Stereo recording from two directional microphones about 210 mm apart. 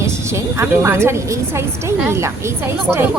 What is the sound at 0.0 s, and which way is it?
A woman's voice, 15° right (ahead or behind).